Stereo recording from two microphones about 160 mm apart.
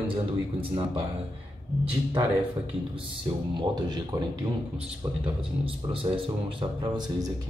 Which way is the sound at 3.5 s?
25° right (ahead or behind).